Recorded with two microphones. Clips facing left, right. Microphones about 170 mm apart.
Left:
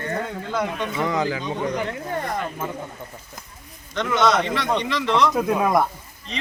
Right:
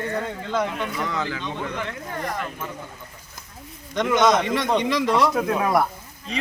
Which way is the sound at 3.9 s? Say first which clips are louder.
Right 1 dB; 15° right (ahead or behind).